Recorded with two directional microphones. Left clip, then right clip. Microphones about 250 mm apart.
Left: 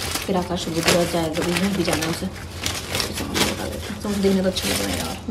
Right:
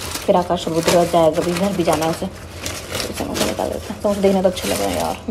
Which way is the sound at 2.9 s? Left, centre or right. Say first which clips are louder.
Right 3 dB; centre.